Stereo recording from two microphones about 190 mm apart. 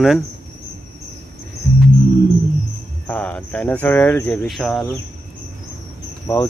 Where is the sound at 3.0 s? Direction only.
5° left (ahead or behind).